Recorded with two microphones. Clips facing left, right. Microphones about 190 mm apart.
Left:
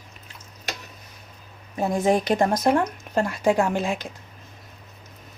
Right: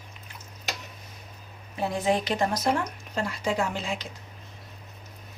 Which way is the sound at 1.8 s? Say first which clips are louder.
Left 5 dB; 45° left (ahead or behind).